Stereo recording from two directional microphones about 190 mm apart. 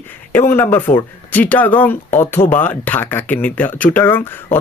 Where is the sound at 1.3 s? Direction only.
10° left (ahead or behind).